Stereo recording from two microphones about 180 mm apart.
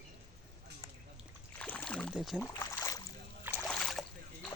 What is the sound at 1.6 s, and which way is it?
Rowboat, 5° left (ahead or behind).